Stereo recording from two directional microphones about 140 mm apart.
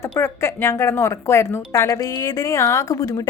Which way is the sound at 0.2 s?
20° left (ahead or behind).